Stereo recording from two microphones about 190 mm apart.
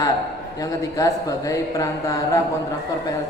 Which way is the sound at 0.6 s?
20° left (ahead or behind).